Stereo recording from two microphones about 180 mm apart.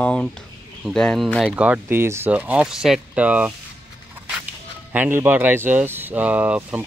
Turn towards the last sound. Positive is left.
turn(degrees=-10)  # may be behind; listen again after turning